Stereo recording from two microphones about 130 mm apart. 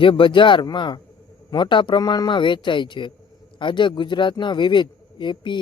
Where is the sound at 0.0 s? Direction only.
40° left (ahead or behind).